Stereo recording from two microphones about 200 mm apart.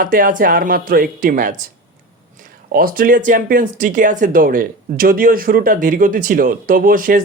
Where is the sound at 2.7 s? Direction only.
45° right (ahead or behind).